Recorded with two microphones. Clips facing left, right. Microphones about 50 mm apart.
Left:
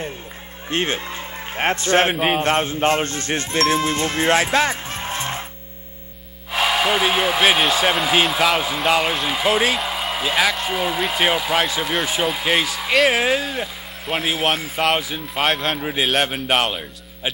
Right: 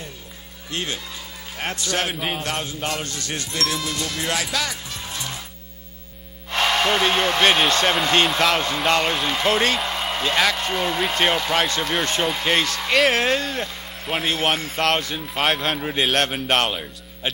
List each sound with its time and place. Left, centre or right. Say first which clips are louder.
0.7 s speech: left 6 dB; left
6.5 s speech: left 1 dB; centre